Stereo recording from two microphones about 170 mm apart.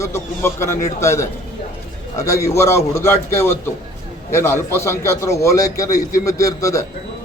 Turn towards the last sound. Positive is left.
turn(degrees=20)  # may be behind; listen again after turning